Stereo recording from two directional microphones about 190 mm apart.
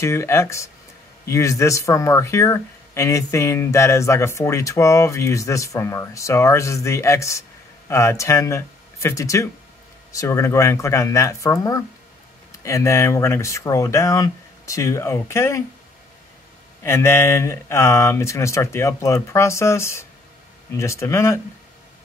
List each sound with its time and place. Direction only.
0.0 s speech: 15° left (ahead or behind)
16.8 s speech: 15° left (ahead or behind)